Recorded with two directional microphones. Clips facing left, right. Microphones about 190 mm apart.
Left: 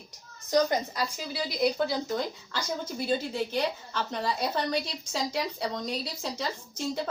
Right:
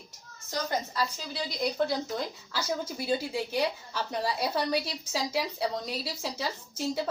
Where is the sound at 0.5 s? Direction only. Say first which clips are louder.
Left 6 dB; 15° left (ahead or behind).